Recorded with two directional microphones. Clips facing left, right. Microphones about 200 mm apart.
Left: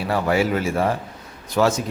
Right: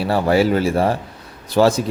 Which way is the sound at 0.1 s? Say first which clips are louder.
Right 4 dB; 35° right (ahead or behind).